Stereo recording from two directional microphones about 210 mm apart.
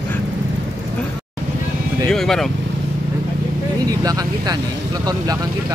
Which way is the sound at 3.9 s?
20° right (ahead or behind).